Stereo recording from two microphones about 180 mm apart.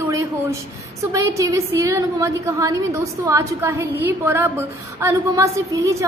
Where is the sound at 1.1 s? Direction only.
15° right (ahead or behind).